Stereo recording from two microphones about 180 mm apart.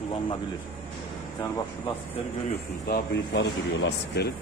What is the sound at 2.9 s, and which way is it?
Speech, 70° left (ahead or behind).